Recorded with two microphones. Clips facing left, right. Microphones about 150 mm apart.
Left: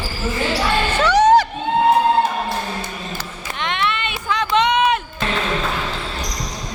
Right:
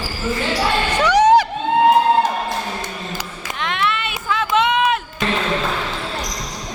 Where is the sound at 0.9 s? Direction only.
10° right (ahead or behind).